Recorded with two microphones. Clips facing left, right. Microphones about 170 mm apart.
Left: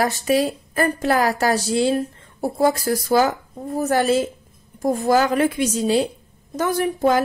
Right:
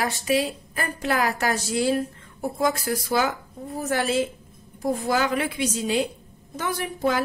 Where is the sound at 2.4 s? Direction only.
35° left (ahead or behind).